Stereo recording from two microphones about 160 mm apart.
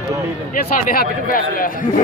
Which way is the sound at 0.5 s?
60° left (ahead or behind).